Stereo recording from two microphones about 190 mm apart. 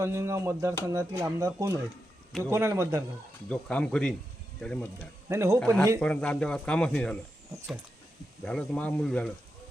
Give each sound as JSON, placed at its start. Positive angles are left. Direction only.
{"t": 0.0, "sound": "speech", "side_deg": -15}
{"t": 3.5, "sound": "speech", "side_deg": 5}
{"t": 5.3, "sound": "speech", "side_deg": -15}
{"t": 6.0, "sound": "speech", "side_deg": 5}
{"t": 8.4, "sound": "speech", "side_deg": 5}